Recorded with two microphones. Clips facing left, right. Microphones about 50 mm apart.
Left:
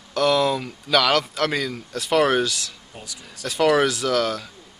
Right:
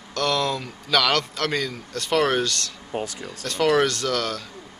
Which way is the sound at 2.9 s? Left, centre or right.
Right.